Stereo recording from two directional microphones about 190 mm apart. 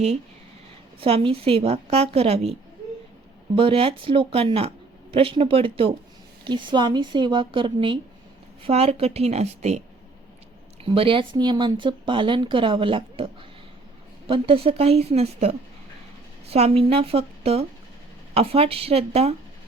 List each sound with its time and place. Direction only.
1.0 s a woman's voice: 30° right (ahead or behind)
10.8 s a woman's voice: 30° right (ahead or behind)